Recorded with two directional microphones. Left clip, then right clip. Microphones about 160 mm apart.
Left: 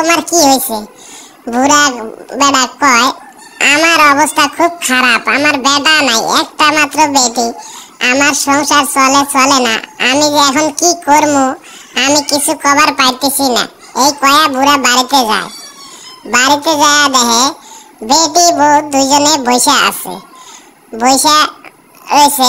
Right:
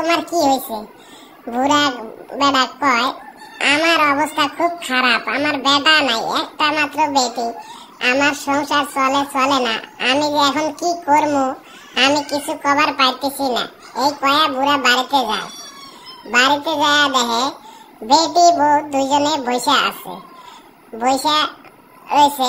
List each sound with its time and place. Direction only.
0.4 s a child's voice: 40° left (ahead or behind)
8.0 s a child's voice: 30° left (ahead or behind)
11.2 s a child's voice: 30° left (ahead or behind)
18.8 s a child's voice: 30° left (ahead or behind)